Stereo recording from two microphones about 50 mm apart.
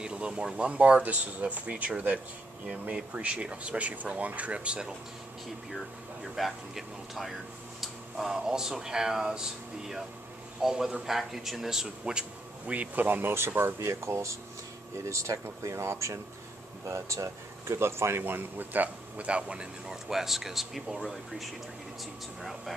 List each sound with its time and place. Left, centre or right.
0.0 s speech: right
6.3 s a man's voice: centre
12.0 s speech: centre
12.7 s speech: right
13.7 s speech: right
15.0 s speech: right; by 20.0 s centre
20.1 s speech: centre